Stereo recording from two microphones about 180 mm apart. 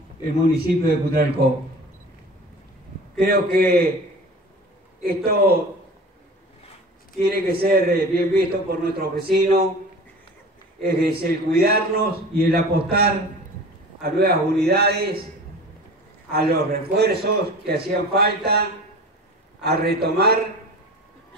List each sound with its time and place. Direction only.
0.5 s a man's voice: 55° right (ahead or behind)
3.2 s a man's voice: 60° right (ahead or behind)
5.0 s a man's voice: 60° right (ahead or behind)
7.2 s a man's voice: 60° right (ahead or behind)
10.8 s a man's voice: 60° right (ahead or behind)
16.3 s a man's voice: 60° right (ahead or behind)